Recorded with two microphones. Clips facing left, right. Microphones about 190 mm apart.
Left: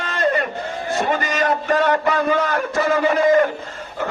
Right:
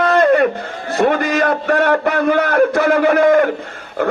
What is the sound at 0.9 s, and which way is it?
A man's voice, 60° right (ahead or behind).